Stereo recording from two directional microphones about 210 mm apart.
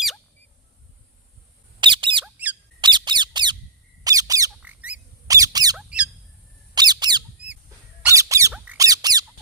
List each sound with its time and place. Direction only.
1.8 s squawk: 25° right (ahead or behind)
2.2 s a sound: 5° right (ahead or behind)
2.8 s squeak: 20° right (ahead or behind)
5.7 s squawk: 5° right (ahead or behind)
6.7 s squeak: 20° right (ahead or behind)